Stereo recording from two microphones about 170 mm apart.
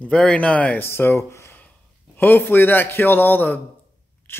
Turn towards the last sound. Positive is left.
turn(degrees=10)  # may be behind; listen again after turning